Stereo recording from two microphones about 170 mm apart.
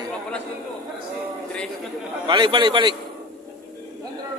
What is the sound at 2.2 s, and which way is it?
Speech, 30° right (ahead or behind).